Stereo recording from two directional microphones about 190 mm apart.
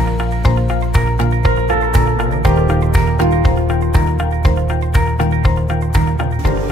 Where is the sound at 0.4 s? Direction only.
Centre (ahead or behind).